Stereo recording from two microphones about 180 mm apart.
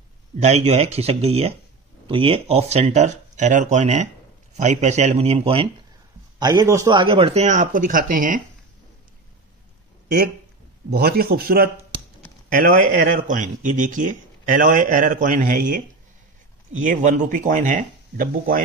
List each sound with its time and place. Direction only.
0.4 s speech: 35° right (ahead or behind)
6.4 s speech: 20° right (ahead or behind); by 8.4 s 50° right (ahead or behind)
10.0 s speech: 60° right (ahead or behind)
16.8 s speech: 45° right (ahead or behind)